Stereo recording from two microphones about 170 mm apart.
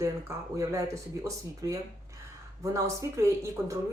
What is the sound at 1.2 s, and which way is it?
Speech, 20° right (ahead or behind).